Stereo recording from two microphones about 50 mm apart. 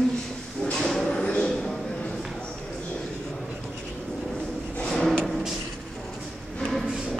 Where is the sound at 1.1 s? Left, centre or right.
Centre.